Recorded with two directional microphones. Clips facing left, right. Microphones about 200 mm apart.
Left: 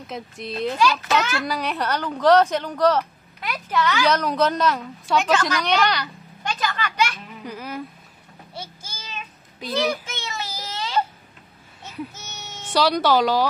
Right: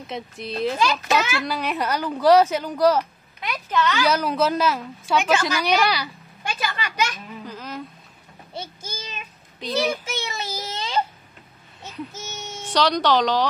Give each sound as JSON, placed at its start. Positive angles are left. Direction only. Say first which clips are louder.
{"t": 0.0, "sound": "speech", "louder": "right 1 dB", "side_deg": 0}
{"t": 0.7, "sound": "a child's voice", "louder": "left 2 dB", "side_deg": -20}
{"t": 1.1, "sound": "a woman's voice", "louder": "even", "side_deg": 0}
{"t": 3.3, "sound": "speech", "louder": "even", "side_deg": 5}
{"t": 4.0, "sound": "a woman's voice", "louder": "left 2 dB", "side_deg": -5}
{"t": 7.4, "sound": "a sound", "louder": "left 3 dB", "side_deg": 10}
{"t": 8.5, "sound": "child singing", "louder": "right 4 dB", "side_deg": -15}
{"t": 12.7, "sound": "a woman's voice", "louder": "left 1 dB", "side_deg": 5}